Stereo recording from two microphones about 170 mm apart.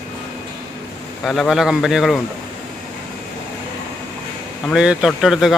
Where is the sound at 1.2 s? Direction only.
Centre (ahead or behind).